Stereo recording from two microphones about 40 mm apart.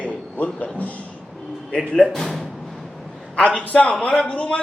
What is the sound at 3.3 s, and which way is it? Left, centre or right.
A man's voice, left.